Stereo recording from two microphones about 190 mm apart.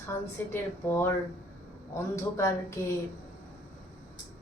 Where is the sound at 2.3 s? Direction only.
15° left (ahead or behind).